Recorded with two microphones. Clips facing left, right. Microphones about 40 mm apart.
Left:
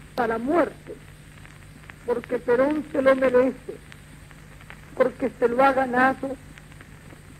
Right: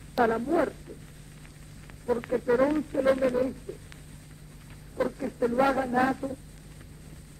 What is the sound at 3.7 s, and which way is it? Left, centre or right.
Speech, left.